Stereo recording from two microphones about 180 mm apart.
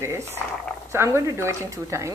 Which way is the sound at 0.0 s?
15° right (ahead or behind).